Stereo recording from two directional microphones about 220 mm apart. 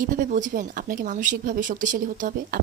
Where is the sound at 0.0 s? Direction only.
35° right (ahead or behind).